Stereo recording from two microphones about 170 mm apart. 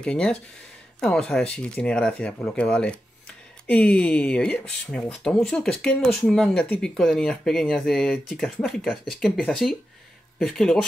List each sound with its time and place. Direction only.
0.0 s speech: 5° left (ahead or behind)